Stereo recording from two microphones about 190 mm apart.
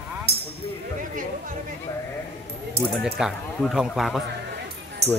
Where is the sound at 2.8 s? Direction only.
55° right (ahead or behind).